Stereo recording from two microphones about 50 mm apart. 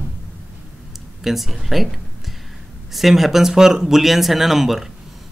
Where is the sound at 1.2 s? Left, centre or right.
Centre.